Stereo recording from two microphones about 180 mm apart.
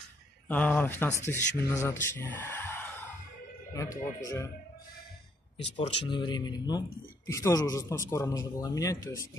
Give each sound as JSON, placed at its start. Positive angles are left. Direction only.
{"t": 0.5, "sound": "a man's voice", "side_deg": 10}
{"t": 5.8, "sound": "a man's voice", "side_deg": 25}